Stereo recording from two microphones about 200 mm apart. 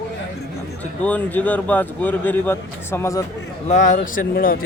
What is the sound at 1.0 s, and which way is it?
Speech, 5° left (ahead or behind).